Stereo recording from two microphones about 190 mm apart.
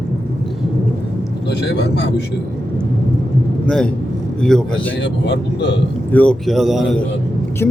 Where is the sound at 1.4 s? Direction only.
60° left (ahead or behind).